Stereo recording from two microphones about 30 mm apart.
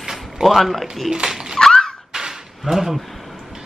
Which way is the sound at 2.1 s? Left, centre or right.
Centre.